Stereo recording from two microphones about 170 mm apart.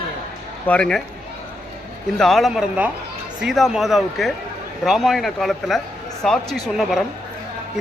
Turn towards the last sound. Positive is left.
turn(degrees=0)  # may be behind; listen again after turning